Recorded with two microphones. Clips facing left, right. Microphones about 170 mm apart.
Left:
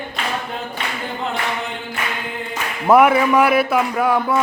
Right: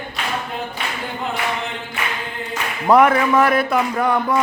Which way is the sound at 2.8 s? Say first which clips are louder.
Left 1 dB; 10° left (ahead or behind).